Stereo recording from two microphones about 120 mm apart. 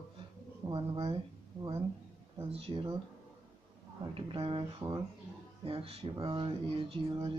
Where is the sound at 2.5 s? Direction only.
50° right (ahead or behind).